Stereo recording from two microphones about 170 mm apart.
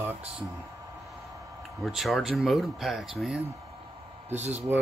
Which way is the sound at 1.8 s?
Centre (ahead or behind).